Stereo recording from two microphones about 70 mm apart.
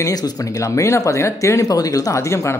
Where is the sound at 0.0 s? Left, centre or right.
Left.